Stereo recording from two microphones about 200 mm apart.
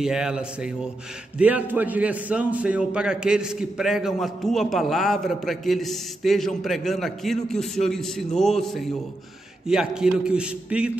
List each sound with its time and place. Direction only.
0.0 s a man's voice: 5° right (ahead or behind)